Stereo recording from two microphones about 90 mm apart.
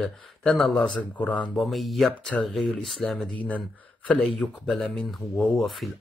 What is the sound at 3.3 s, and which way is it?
Speech, 15° left (ahead or behind).